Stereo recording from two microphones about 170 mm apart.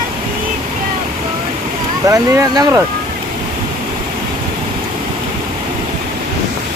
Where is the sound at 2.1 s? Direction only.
20° right (ahead or behind).